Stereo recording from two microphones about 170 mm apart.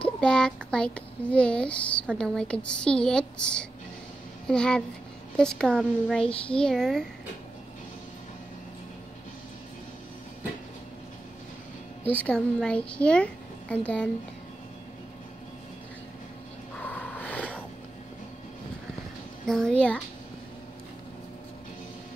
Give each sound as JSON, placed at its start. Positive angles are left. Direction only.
{"t": 0.0, "sound": "a child's voice", "side_deg": 5}
{"t": 12.1, "sound": "a woman's voice", "side_deg": 10}
{"t": 16.7, "sound": "a sound", "side_deg": 10}
{"t": 19.4, "sound": "a child's voice", "side_deg": 5}